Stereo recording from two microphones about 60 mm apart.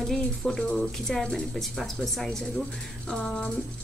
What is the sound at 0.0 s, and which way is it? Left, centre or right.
A woman's voice, centre.